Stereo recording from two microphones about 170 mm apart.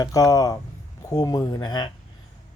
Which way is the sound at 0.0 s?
20° left (ahead or behind).